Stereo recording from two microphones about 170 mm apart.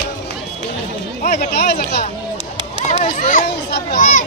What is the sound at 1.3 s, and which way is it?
Speech, 70° left (ahead or behind).